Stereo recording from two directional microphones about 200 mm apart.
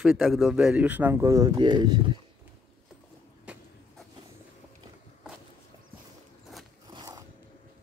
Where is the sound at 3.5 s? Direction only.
5° right (ahead or behind).